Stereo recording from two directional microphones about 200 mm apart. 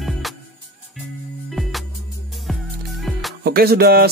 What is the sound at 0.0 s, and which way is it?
Music, centre (ahead or behind).